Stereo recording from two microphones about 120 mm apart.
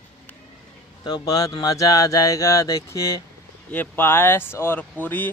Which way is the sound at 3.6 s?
15° left (ahead or behind).